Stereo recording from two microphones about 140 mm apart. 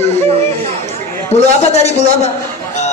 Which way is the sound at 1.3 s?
45° left (ahead or behind).